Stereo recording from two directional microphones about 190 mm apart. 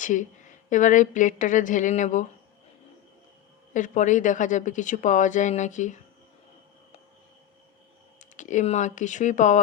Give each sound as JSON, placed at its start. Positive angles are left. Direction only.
{"t": 0.0, "sound": "a woman's voice", "side_deg": 40}
{"t": 3.7, "sound": "a woman's voice", "side_deg": 40}
{"t": 8.2, "sound": "a woman's voice", "side_deg": 40}